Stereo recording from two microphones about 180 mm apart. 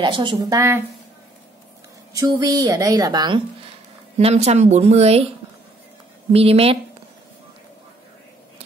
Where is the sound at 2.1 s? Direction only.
20° right (ahead or behind).